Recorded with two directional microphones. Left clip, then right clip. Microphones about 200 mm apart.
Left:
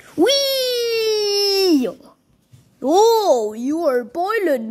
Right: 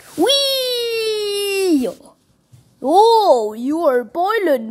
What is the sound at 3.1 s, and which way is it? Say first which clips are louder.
A child's voice: right 3 dB; 5° left (ahead or behind).